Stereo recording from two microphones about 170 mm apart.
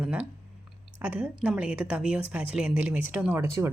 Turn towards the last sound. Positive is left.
turn(degrees=-15)  # may be behind; listen again after turning